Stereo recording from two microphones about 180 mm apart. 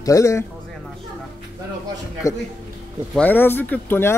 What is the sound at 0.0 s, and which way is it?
Speech, 15° left (ahead or behind).